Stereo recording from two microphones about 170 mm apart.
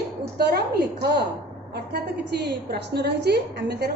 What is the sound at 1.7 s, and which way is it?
A woman's voice, 75° right (ahead or behind).